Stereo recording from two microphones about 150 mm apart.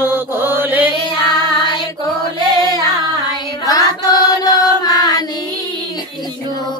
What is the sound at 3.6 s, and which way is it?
Chant, 25° left (ahead or behind).